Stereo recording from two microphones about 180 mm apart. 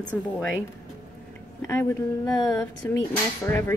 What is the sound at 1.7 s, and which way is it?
Speech, 15° left (ahead or behind).